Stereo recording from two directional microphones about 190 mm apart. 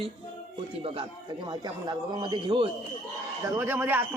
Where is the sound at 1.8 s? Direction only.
25° right (ahead or behind).